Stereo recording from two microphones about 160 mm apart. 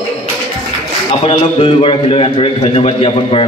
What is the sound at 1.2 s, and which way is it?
A man's voice, 35° left (ahead or behind).